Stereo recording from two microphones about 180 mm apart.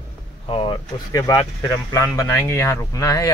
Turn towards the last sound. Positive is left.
turn(degrees=20)  # may be behind; listen again after turning